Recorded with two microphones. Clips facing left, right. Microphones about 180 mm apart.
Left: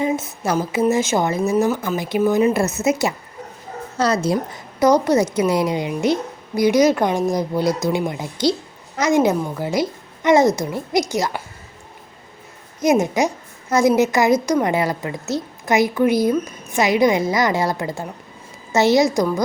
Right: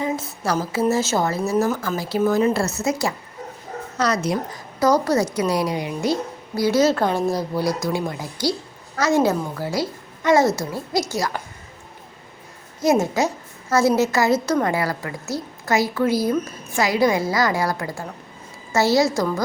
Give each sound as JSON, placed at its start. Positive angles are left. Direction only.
{"t": 0.0, "sound": "a sound", "side_deg": 20}
{"t": 0.6, "sound": "a woman's voice", "side_deg": 20}
{"t": 12.8, "sound": "a woman's voice", "side_deg": 15}